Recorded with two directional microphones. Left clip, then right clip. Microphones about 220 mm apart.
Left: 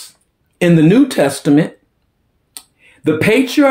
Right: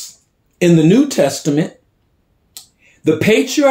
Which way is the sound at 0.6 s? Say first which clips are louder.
Left 1 dB; 10° left (ahead or behind).